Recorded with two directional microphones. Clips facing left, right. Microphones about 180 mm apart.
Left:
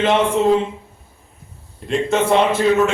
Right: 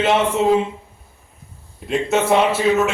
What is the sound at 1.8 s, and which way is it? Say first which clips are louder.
Speech: left 1 dB; 5° right (ahead or behind).